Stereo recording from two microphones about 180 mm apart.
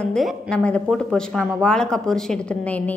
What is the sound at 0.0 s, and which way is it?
Speech, centre (ahead or behind).